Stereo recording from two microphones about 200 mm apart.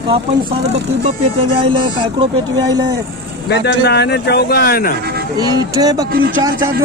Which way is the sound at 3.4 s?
55° left (ahead or behind).